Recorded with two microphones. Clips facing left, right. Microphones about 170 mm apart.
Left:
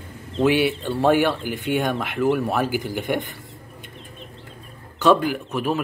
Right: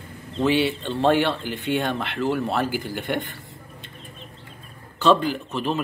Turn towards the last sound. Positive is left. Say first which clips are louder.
# left 2 dB
turn(degrees=10)  # may be behind; listen again after turning